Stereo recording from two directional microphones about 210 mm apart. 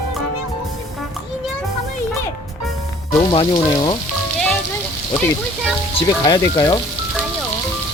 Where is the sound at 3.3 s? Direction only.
20° left (ahead or behind).